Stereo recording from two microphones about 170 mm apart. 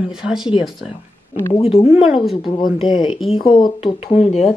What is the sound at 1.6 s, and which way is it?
A woman's voice, 35° left (ahead or behind).